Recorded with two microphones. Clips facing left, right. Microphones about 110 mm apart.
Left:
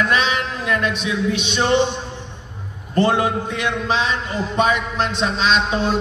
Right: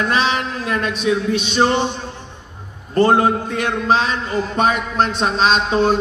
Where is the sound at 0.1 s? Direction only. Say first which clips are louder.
Right 1 dB; 35° right (ahead or behind).